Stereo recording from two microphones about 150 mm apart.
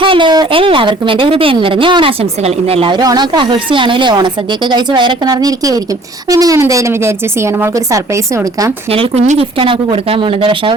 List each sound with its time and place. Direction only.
0.0 s a woman's voice: 35° right (ahead or behind)
8.9 s speech: 45° right (ahead or behind)
9.6 s a woman's voice: 35° right (ahead or behind)